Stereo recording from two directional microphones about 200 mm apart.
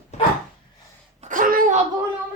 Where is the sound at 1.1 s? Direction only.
40° right (ahead or behind).